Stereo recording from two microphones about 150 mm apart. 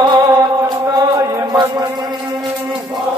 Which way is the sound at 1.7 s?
25° right (ahead or behind).